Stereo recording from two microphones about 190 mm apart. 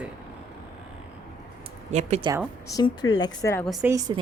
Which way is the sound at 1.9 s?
35° right (ahead or behind).